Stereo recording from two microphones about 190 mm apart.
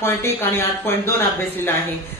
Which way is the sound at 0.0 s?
15° left (ahead or behind).